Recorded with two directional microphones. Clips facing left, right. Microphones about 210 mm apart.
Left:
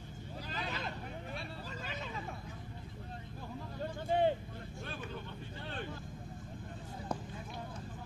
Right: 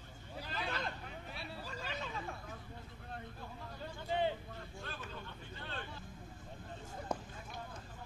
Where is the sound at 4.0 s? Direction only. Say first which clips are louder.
Left 5 dB; 50° left (ahead or behind).